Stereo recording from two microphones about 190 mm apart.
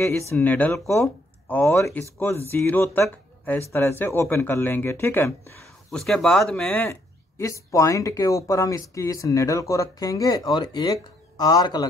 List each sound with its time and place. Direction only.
0.4 s speech: 10° left (ahead or behind)
5.9 s speech: centre (ahead or behind); by 11.9 s 20° left (ahead or behind)